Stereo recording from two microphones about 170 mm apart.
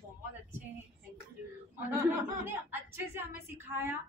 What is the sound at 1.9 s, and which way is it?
A woman's voice, 10° right (ahead or behind).